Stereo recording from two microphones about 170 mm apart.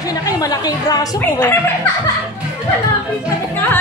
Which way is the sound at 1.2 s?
10° left (ahead or behind).